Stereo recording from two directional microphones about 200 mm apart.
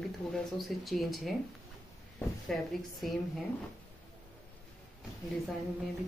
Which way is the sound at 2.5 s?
Centre (ahead or behind).